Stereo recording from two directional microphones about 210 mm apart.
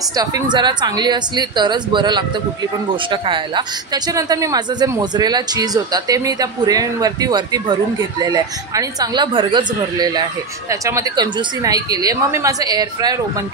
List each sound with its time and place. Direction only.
0.1 s a woman's voice: 20° right (ahead or behind)